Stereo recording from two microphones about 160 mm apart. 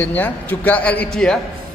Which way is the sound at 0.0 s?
10° left (ahead or behind).